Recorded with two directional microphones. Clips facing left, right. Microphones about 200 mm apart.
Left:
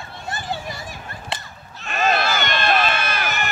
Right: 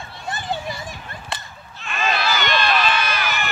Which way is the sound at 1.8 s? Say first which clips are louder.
Left 2 dB; 45° left (ahead or behind).